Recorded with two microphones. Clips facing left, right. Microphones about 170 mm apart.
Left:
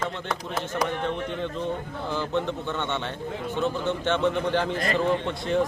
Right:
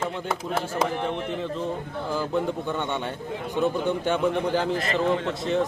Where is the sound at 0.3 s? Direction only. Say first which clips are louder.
Right 2 dB; 25° right (ahead or behind).